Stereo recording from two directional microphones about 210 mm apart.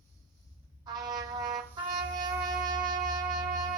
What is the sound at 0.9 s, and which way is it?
Wind instrument, 20° right (ahead or behind).